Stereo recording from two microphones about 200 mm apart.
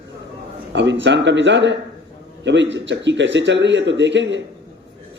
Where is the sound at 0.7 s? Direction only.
65° right (ahead or behind).